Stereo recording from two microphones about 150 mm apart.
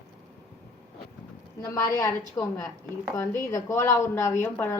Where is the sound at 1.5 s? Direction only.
25° left (ahead or behind).